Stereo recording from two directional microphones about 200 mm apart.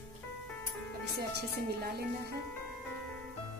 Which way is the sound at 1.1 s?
55° right (ahead or behind).